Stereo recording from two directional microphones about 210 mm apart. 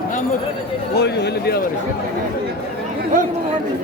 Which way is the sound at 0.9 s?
50° left (ahead or behind).